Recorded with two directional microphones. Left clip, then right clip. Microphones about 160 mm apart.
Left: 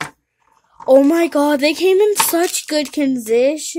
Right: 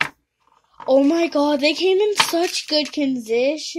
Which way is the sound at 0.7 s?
25° left (ahead or behind).